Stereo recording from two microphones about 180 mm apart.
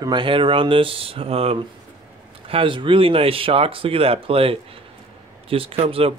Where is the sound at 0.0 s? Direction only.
25° right (ahead or behind).